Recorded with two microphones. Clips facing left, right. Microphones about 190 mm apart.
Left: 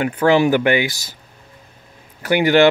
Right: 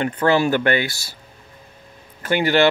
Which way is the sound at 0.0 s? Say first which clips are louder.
Left 3 dB; 10° left (ahead or behind).